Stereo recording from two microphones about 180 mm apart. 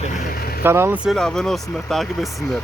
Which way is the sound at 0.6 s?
15° right (ahead or behind).